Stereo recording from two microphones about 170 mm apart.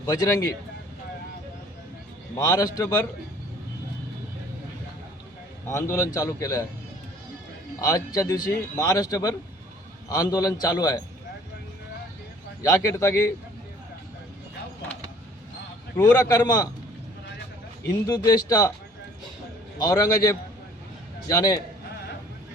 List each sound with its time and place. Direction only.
0.0 s a man's voice: 20° left (ahead or behind)
2.4 s a man's voice: 20° left (ahead or behind)
5.6 s a man's voice: 15° left (ahead or behind)
7.8 s a man's voice: 20° left (ahead or behind)
12.6 s a man's voice: 20° left (ahead or behind)
16.0 s a man's voice: 20° left (ahead or behind)
17.8 s a man's voice: 20° left (ahead or behind)
19.8 s a man's voice: 20° left (ahead or behind)